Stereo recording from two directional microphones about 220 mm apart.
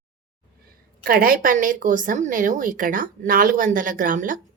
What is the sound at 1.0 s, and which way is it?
A woman's voice, 40° right (ahead or behind).